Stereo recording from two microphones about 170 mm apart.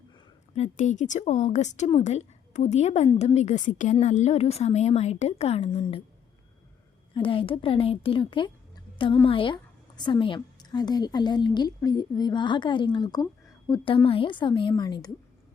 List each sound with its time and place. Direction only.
0.5 s a woman's voice: 45° left (ahead or behind)
7.1 s a woman's voice: 30° left (ahead or behind)